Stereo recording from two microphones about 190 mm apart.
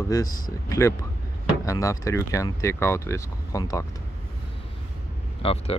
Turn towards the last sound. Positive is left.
turn(degrees=30)  # may be behind; listen again after turning